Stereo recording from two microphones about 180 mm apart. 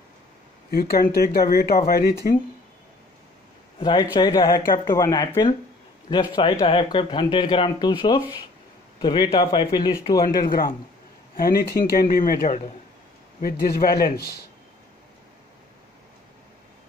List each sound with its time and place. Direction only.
0.7 s speech: 55° left (ahead or behind)
3.8 s speech: 20° left (ahead or behind)
6.6 s speech: 25° left (ahead or behind)
10.4 s a man's voice: 50° left (ahead or behind)